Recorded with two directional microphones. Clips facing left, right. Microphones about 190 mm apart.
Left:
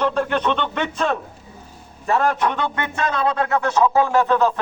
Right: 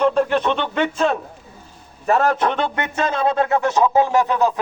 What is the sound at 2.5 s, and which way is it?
Speech, 25° right (ahead or behind).